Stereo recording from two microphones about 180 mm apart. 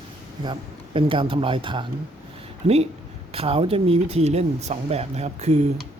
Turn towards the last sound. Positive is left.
turn(degrees=-40)  # may be behind; listen again after turning